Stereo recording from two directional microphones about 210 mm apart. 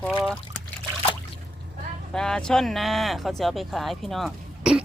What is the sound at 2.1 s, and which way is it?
Speech, 5° left (ahead or behind).